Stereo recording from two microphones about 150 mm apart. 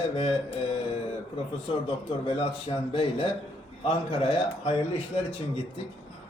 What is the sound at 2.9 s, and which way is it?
Speech, 35° left (ahead or behind).